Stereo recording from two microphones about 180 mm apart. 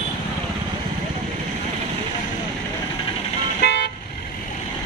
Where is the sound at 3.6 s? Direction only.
70° left (ahead or behind).